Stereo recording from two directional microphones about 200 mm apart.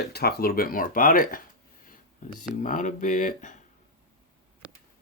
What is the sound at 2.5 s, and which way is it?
Speech, 40° left (ahead or behind).